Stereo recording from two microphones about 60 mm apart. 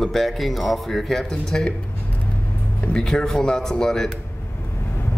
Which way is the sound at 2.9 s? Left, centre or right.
Centre.